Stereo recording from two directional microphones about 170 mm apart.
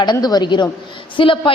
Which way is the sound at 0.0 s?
25° left (ahead or behind).